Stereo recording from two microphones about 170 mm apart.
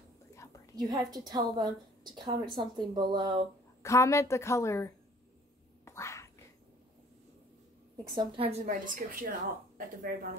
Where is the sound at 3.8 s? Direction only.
15° left (ahead or behind).